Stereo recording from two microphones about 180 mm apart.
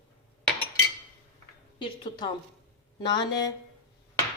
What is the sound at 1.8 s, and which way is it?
Speech, 25° left (ahead or behind).